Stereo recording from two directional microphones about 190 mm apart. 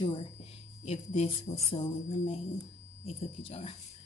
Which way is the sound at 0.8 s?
35° left (ahead or behind).